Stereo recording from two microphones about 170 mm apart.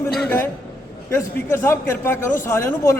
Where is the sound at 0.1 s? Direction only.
Centre (ahead or behind).